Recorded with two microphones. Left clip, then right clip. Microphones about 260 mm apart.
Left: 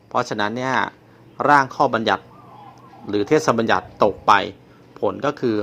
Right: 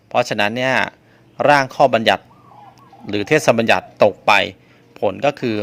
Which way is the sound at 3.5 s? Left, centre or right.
Right.